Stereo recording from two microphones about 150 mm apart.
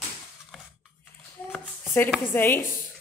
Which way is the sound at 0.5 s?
Centre (ahead or behind).